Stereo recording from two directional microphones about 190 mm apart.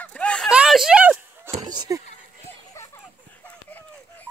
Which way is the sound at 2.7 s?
15° left (ahead or behind).